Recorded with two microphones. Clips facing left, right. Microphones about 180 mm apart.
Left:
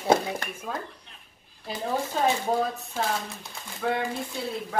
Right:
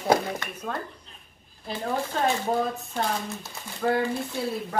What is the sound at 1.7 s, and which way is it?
A woman's voice, 5° left (ahead or behind).